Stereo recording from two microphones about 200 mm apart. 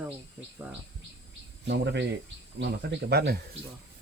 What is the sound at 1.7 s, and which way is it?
Speech, 60° right (ahead or behind).